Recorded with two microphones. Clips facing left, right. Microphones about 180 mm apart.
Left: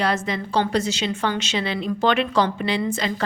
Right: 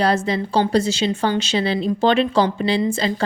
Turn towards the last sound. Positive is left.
turn(degrees=-30)  # may be behind; listen again after turning